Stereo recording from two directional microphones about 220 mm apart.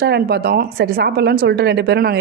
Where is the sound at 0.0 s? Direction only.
45° right (ahead or behind).